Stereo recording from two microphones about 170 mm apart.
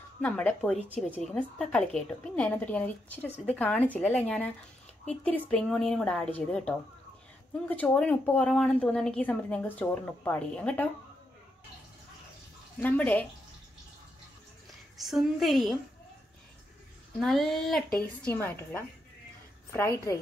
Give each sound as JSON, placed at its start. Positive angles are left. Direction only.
{"t": 0.2, "sound": "speech", "side_deg": 5}
{"t": 5.5, "sound": "a woman's voice", "side_deg": 5}
{"t": 12.8, "sound": "speech", "side_deg": 10}
{"t": 15.0, "sound": "a woman's voice", "side_deg": 0}
{"t": 17.2, "sound": "a woman's voice", "side_deg": 0}